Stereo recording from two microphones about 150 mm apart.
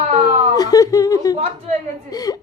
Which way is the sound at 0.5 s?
25° left (ahead or behind).